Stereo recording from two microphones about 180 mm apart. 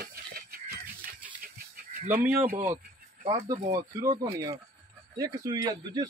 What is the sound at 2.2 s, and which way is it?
Speech, 10° right (ahead or behind).